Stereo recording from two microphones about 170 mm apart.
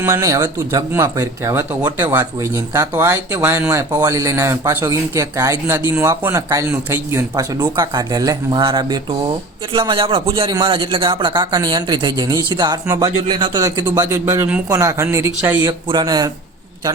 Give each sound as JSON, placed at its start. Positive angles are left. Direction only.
{"t": 0.0, "sound": "a man's voice", "side_deg": -20}
{"t": 15.6, "sound": "a man's voice", "side_deg": -25}